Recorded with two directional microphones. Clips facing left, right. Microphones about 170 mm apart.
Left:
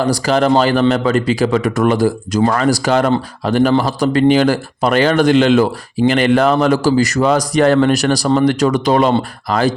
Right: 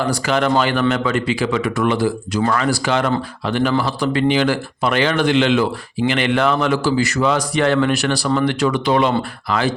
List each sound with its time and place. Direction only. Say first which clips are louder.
0.0 s a man's voice: left 4 dB; 35° left (ahead or behind)